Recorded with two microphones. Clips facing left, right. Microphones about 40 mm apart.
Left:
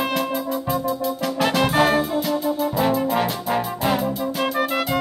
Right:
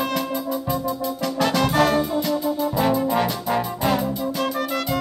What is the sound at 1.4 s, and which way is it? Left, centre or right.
Brass instrument, centre.